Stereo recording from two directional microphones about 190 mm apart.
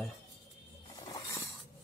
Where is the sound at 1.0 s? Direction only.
15° left (ahead or behind).